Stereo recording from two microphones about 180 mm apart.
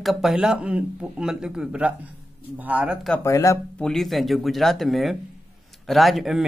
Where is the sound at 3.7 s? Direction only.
5° left (ahead or behind).